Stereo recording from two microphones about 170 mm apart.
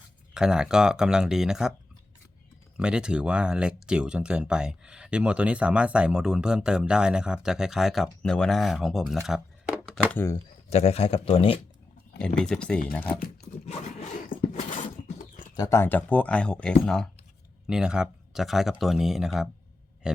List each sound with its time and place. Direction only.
0.3 s speech: 5° right (ahead or behind)
2.7 s speech: 5° right (ahead or behind)
9.2 s a sound: centre (ahead or behind)
10.2 s speech: 15° left (ahead or behind)
10.7 s speech: 40° left (ahead or behind)
12.2 s speech: 5° left (ahead or behind)
13.7 s zipper: 45° left (ahead or behind)
15.0 s a sound: 45° left (ahead or behind)
15.5 s speech: 20° left (ahead or behind); by 19.5 s centre (ahead or behind)
20.0 s a sound: 5° right (ahead or behind)